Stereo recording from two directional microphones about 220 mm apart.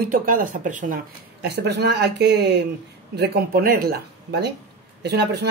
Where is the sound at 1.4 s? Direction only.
50° right (ahead or behind).